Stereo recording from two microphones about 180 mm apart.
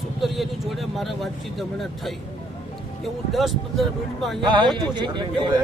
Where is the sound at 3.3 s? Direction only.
Centre (ahead or behind).